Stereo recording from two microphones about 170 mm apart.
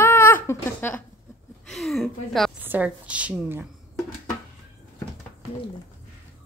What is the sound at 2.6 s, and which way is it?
Speech, 10° right (ahead or behind).